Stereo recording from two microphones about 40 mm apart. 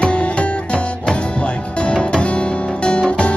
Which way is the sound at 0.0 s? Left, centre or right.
Left.